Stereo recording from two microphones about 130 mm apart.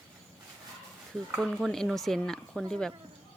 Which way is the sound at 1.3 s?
Centre (ahead or behind).